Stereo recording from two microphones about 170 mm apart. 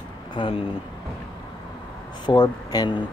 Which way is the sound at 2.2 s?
25° left (ahead or behind).